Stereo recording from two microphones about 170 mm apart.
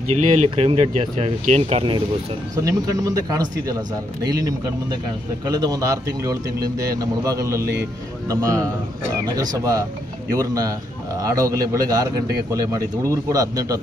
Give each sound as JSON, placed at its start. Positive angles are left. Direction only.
{"t": 0.1, "sound": "speech", "side_deg": -40}
{"t": 2.5, "sound": "speech", "side_deg": -20}